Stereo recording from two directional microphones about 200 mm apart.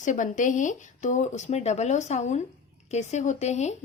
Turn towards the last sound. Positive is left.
turn(degrees=35)  # may be behind; listen again after turning